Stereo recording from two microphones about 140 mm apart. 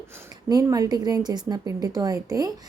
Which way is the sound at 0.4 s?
25° right (ahead or behind).